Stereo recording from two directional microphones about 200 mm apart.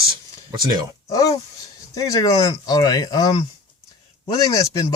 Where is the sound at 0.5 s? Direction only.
20° right (ahead or behind).